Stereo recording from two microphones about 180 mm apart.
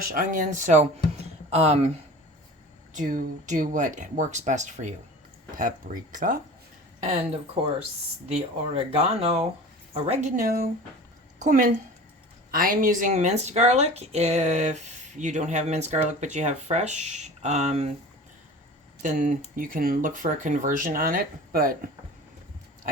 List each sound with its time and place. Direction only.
0.1 s speech: 50° right (ahead or behind)
2.9 s speech: 45° right (ahead or behind)
11.3 s a woman's voice: 45° right (ahead or behind)
19.0 s speech: 45° right (ahead or behind)